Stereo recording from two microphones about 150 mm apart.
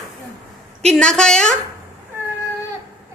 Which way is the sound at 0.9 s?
5° left (ahead or behind).